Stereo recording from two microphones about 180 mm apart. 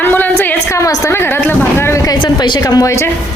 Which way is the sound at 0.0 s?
10° left (ahead or behind).